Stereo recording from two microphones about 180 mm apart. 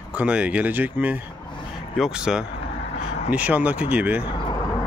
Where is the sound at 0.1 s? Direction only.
5° right (ahead or behind).